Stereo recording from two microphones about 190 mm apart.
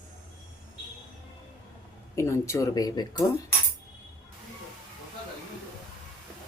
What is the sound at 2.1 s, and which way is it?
Speech, 15° left (ahead or behind).